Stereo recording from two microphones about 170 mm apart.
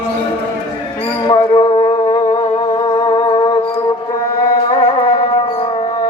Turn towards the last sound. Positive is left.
turn(degrees=30)  # may be behind; listen again after turning